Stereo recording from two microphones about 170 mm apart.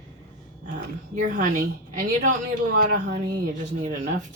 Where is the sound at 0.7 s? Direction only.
50° right (ahead or behind).